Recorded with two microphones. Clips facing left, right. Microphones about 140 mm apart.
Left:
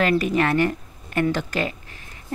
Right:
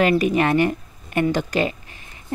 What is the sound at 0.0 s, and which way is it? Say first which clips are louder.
A woman's voice: right 2 dB; 15° right (ahead or behind).